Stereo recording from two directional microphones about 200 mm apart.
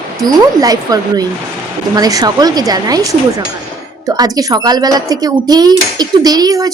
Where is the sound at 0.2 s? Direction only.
20° right (ahead or behind).